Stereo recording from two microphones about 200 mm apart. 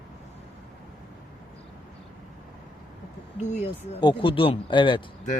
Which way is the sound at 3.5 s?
35° left (ahead or behind).